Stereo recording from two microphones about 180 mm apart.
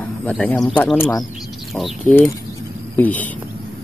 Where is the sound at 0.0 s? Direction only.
10° left (ahead or behind).